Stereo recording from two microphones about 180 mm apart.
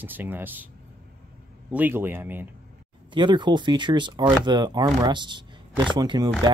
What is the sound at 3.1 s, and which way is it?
Speech, 25° right (ahead or behind).